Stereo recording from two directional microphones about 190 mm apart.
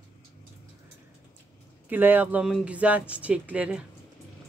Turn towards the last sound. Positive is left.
turn(degrees=-5)  # may be behind; listen again after turning